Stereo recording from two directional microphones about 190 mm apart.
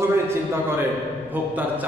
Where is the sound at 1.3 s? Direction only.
10° right (ahead or behind).